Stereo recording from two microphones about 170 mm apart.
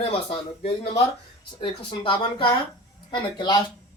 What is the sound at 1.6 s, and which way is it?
A woman's voice, 30° left (ahead or behind).